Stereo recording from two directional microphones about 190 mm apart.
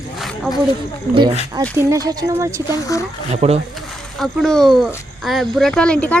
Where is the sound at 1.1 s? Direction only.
20° right (ahead or behind).